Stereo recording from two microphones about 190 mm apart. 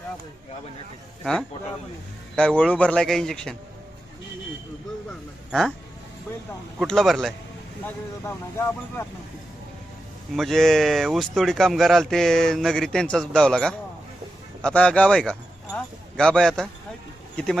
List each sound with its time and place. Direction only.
1.2 s speech: 5° left (ahead or behind)
5.5 s a man's voice: centre (ahead or behind)
6.7 s speech: centre (ahead or behind)
7.9 s speech: 15° left (ahead or behind)
10.3 s speech: centre (ahead or behind)